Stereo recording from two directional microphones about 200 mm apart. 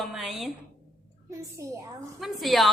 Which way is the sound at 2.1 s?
Centre (ahead or behind).